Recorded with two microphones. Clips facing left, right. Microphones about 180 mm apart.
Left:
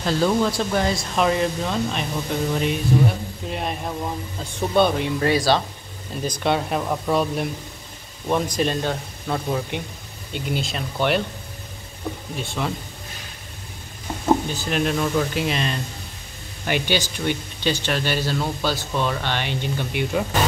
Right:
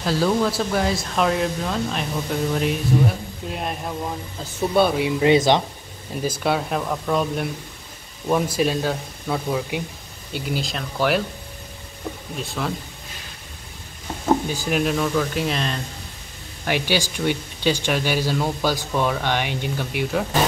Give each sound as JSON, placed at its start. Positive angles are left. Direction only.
{"t": 0.0, "sound": "speech", "side_deg": -5}
{"t": 5.2, "sound": "speech", "side_deg": -20}
{"t": 6.2, "sound": "speech", "side_deg": -5}
{"t": 6.8, "sound": "speech", "side_deg": 5}
{"t": 8.3, "sound": "speech", "side_deg": -5}
{"t": 12.4, "sound": "speech", "side_deg": 0}
{"t": 14.5, "sound": "speech", "side_deg": -10}